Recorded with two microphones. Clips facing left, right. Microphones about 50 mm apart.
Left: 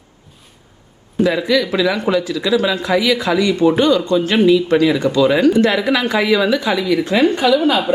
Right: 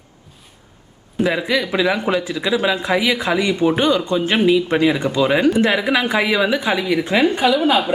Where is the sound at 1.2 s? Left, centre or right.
Centre.